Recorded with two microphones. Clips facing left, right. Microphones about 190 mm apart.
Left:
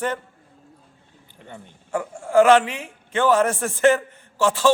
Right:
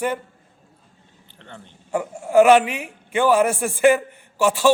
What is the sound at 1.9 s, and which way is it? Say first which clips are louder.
A man's voice: right 2 dB; 20° right (ahead or behind).